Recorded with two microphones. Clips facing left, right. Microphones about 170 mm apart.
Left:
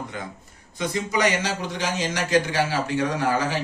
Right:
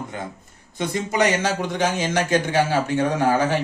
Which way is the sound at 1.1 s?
55° right (ahead or behind).